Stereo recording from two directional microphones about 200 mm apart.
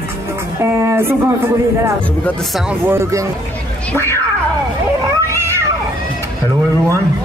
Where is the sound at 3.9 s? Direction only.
15° left (ahead or behind).